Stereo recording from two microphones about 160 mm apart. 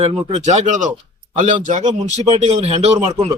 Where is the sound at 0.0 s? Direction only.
40° right (ahead or behind).